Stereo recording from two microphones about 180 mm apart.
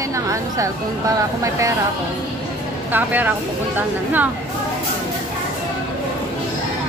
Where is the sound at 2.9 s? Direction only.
10° right (ahead or behind).